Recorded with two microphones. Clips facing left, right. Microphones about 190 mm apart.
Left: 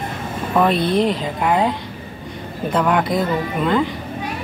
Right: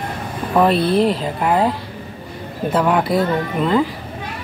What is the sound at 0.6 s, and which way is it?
Speech, 5° right (ahead or behind).